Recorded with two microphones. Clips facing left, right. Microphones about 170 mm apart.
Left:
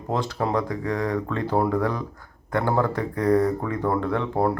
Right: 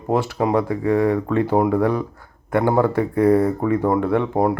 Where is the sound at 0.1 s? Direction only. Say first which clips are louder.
Right 6 dB; 15° right (ahead or behind).